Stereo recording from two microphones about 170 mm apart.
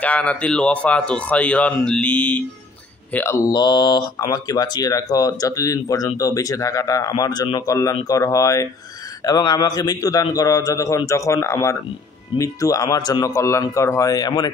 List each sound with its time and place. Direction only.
0.0 s speech: 10° left (ahead or behind)
3.5 s speech: 25° left (ahead or behind)